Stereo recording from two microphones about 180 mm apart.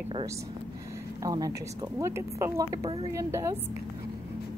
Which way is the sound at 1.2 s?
20° right (ahead or behind).